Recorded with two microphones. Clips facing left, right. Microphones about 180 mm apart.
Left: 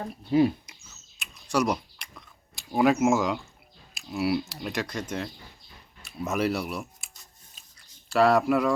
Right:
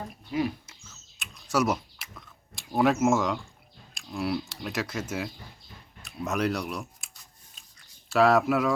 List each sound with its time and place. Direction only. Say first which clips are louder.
0.3 s speech: left 7 dB; 30° left (ahead or behind)
1.2 s a sound: even; centre (ahead or behind)
3.9 s speech: left 3 dB; 5° left (ahead or behind)
7.5 s chewing: even; centre (ahead or behind)